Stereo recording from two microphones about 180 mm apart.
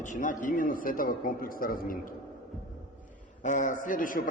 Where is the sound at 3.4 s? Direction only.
45° left (ahead or behind).